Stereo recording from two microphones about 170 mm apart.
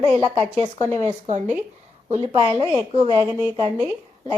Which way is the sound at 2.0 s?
35° right (ahead or behind).